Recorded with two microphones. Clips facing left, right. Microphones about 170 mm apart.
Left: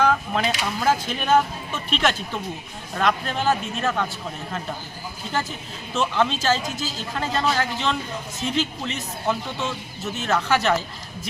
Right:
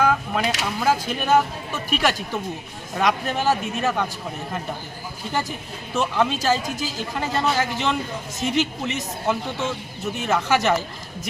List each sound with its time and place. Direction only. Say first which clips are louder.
0.0 s a sound: even; 5° right (ahead or behind)
0.8 s speech: right 1 dB; 10° right (ahead or behind)
5.3 s speech: right 1 dB; 15° right (ahead or behind)